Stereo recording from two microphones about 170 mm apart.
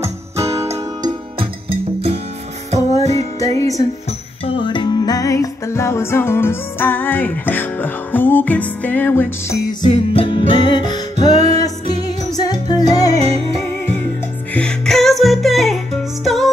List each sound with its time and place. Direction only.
0.4 s music: 15° right (ahead or behind)
1.4 s music: 35° right (ahead or behind)
3.3 s music: 20° left (ahead or behind)
9.8 s music: 35° left (ahead or behind)
11.3 s music: 40° right (ahead or behind)
12.4 s music: 25° left (ahead or behind)
14.5 s music: 5° left (ahead or behind)